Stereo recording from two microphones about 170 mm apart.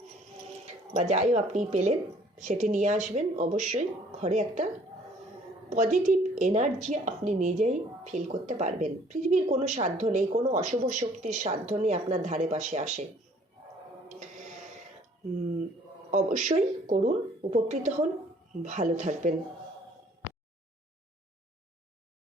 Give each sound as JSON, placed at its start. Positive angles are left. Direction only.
{"t": 0.9, "sound": "a woman's voice", "side_deg": -45}
{"t": 5.7, "sound": "a woman's voice", "side_deg": -45}
{"t": 16.1, "sound": "a woman's voice", "side_deg": -45}